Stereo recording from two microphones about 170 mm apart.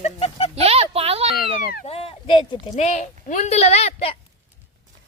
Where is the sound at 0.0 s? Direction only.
35° left (ahead or behind).